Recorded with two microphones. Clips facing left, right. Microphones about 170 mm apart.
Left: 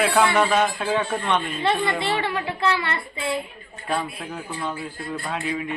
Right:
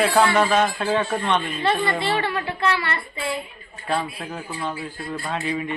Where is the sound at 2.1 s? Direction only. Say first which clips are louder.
Right 1 dB; 20° left (ahead or behind).